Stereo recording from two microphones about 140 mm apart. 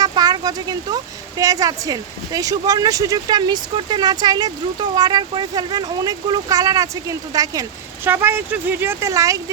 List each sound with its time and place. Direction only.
0.0 s a sound: 30° right (ahead or behind)
1.4 s speech: 25° right (ahead or behind)
8.0 s speech: 15° right (ahead or behind)